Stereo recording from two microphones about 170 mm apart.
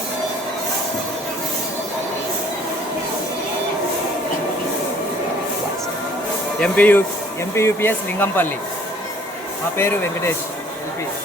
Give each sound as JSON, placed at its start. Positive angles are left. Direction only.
{"t": 6.6, "sound": "speech", "side_deg": 10}
{"t": 9.7, "sound": "speech", "side_deg": 15}